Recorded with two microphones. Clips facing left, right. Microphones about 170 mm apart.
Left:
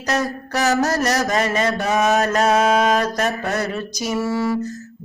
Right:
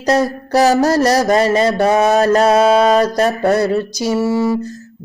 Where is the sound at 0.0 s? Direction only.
30° right (ahead or behind).